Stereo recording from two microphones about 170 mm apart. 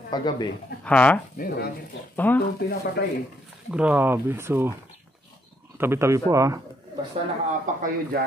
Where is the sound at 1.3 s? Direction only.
65° left (ahead or behind).